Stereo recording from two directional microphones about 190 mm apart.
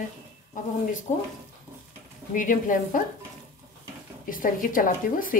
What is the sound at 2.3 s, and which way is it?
Speech, 45° left (ahead or behind).